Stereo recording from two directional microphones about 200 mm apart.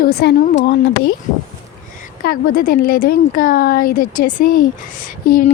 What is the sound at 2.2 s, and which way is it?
A woman's voice, 45° left (ahead or behind).